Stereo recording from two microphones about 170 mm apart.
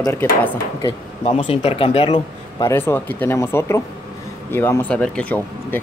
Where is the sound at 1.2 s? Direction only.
35° left (ahead or behind).